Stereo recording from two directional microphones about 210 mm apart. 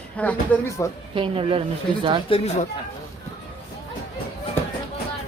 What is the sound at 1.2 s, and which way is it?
Speech, 25° right (ahead or behind).